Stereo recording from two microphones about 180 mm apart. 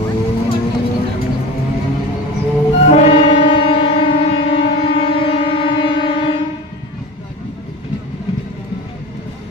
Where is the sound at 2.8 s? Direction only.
40° left (ahead or behind).